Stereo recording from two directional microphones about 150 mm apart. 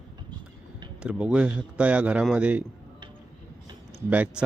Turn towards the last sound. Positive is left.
turn(degrees=-10)  # may be behind; listen again after turning